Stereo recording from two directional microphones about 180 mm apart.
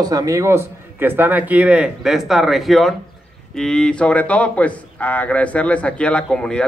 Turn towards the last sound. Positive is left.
turn(degrees=5)  # may be behind; listen again after turning